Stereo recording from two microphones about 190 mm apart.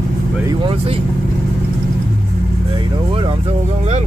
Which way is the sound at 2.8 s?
30° right (ahead or behind).